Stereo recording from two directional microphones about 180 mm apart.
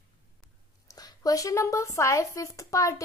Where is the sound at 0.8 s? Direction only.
20° left (ahead or behind).